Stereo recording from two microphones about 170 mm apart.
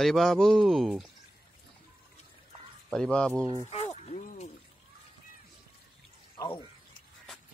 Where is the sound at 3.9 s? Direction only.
40° left (ahead or behind).